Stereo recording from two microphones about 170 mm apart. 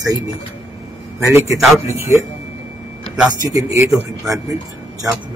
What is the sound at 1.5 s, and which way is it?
Speech, centre (ahead or behind).